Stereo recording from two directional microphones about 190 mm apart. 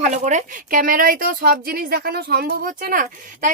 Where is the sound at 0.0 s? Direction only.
40° right (ahead or behind).